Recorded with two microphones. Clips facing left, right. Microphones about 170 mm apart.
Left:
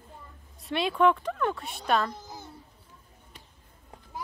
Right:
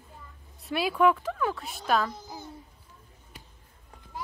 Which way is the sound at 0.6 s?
5° right (ahead or behind).